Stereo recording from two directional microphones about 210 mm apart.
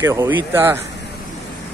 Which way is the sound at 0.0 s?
10° right (ahead or behind).